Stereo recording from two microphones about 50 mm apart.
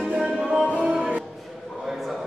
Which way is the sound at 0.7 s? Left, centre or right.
Centre.